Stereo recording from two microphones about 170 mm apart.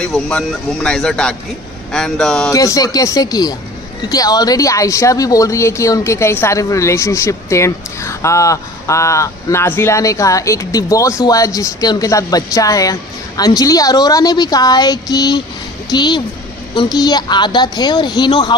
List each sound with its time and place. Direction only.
0.0 s speech: 5° left (ahead or behind)
2.5 s speech: 20° left (ahead or behind)